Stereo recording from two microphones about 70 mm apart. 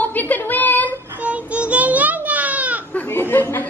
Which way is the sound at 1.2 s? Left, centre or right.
Centre.